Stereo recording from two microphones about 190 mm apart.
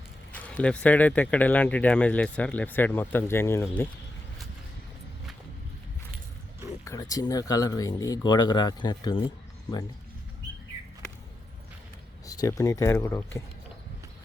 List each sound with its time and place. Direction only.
0.3 s speech: 5° left (ahead or behind)
6.8 s speech: 15° left (ahead or behind)
12.2 s speech: 20° left (ahead or behind)